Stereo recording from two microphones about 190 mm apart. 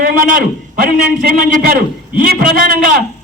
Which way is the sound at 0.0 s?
45° right (ahead or behind).